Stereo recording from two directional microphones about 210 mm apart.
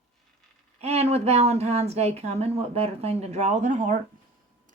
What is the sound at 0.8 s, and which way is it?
Speech, 30° right (ahead or behind).